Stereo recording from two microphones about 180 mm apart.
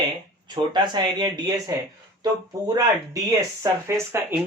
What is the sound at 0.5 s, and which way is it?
Speech, 25° right (ahead or behind).